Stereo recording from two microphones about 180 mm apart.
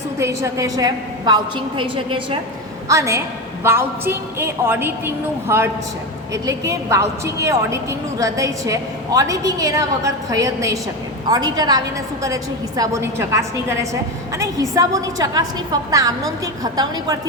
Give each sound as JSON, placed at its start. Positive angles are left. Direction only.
{"t": 0.2, "sound": "a woman's voice", "side_deg": -15}
{"t": 2.9, "sound": "a woman's voice", "side_deg": -15}